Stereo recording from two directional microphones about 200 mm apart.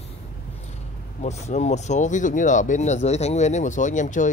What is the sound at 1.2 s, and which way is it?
A man's voice, 35° left (ahead or behind).